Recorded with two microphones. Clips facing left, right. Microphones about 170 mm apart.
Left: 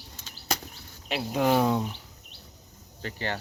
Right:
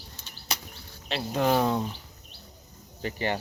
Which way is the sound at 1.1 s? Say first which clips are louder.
Left 1 dB; 5° left (ahead or behind).